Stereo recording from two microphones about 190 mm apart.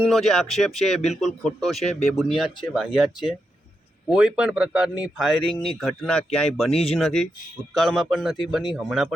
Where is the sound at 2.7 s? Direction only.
Centre (ahead or behind).